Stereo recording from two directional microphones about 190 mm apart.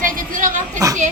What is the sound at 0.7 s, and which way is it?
Speech, 15° right (ahead or behind).